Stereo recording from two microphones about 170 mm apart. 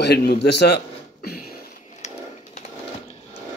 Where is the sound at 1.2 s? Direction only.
65° left (ahead or behind).